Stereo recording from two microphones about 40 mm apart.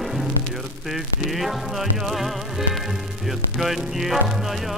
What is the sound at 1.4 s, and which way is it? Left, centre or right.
Music, centre.